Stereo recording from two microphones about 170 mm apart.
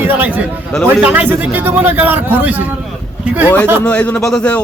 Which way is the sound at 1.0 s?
10° right (ahead or behind).